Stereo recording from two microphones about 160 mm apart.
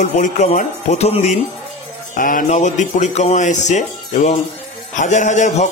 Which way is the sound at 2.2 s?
55° left (ahead or behind).